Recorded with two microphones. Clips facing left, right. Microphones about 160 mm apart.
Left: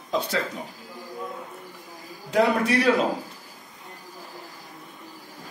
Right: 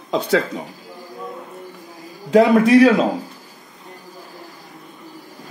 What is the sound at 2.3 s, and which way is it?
Speech, 90° right.